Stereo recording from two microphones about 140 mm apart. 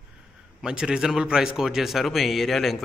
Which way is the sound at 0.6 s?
5° right (ahead or behind).